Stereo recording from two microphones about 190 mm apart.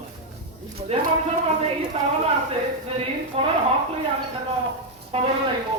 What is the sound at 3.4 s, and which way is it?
Speech, 30° right (ahead or behind).